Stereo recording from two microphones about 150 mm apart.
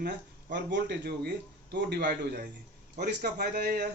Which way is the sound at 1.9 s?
90° right.